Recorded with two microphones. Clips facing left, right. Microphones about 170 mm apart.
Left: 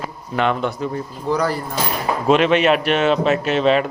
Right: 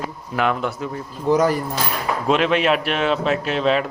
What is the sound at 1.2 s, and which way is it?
Speech, 20° right (ahead or behind).